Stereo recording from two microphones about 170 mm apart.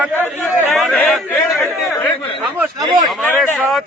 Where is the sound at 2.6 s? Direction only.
20° right (ahead or behind).